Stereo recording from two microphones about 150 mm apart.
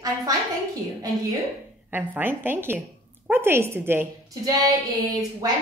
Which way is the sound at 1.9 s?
15° right (ahead or behind).